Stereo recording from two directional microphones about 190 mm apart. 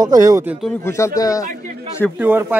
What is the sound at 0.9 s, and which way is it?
Speech, 15° left (ahead or behind).